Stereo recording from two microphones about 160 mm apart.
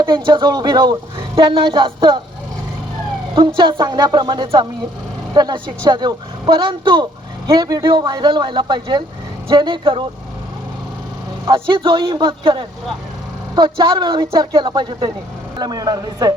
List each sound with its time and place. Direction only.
0.0 s speech: 30° right (ahead or behind)
3.3 s speech: 30° right (ahead or behind)
11.4 s speech: 30° right (ahead or behind)